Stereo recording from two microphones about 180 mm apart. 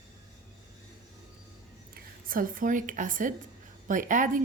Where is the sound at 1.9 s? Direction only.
50° right (ahead or behind).